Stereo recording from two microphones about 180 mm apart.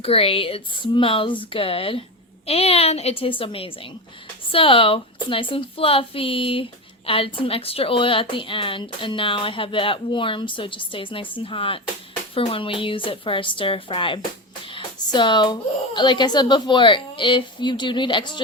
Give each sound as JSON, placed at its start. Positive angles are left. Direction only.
{"t": 0.0, "sound": "a woman's voice", "side_deg": 30}
{"t": 14.7, "sound": "a sound", "side_deg": 25}
{"t": 16.0, "sound": "a woman's voice", "side_deg": 25}